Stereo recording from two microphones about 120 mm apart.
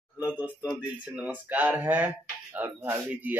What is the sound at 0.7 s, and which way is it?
Speech, 10° right (ahead or behind).